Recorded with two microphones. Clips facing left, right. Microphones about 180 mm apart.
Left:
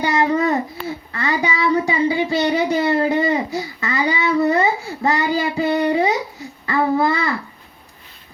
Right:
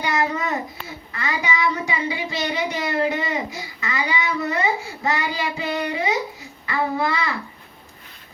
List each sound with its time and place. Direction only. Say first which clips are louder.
0.0 s babbling: left 6 dB; 30° left (ahead or behind)
1.1 s child singing: left 3 dB; 35° left (ahead or behind)
6.7 s a sound: left 5 dB; 40° left (ahead or behind)